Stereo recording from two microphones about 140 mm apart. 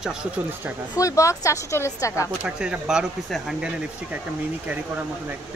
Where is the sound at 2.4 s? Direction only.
5° right (ahead or behind).